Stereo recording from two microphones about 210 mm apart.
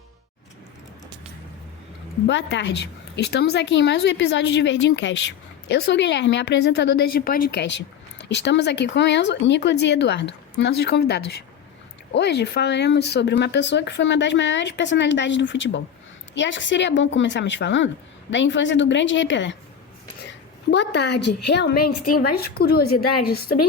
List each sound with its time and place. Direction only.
2.2 s a woman's voice: 60° left (ahead or behind)
20.7 s speech: 55° left (ahead or behind)